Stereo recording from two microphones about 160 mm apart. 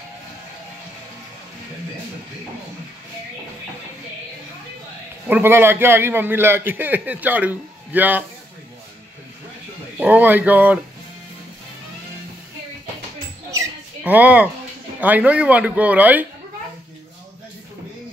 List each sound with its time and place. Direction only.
5.3 s a man's voice: 15° right (ahead or behind)
9.9 s a man's voice: 10° right (ahead or behind)
13.5 s a sound: 15° right (ahead or behind)
15.0 s a man's voice: 10° right (ahead or behind)